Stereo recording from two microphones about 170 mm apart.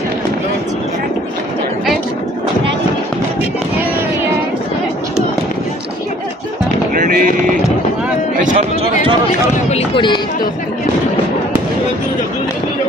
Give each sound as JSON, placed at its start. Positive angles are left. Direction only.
{"t": 6.9, "sound": "vehicle", "side_deg": -55}
{"t": 8.4, "sound": "a sound", "side_deg": -35}
{"t": 9.6, "sound": "run", "side_deg": 35}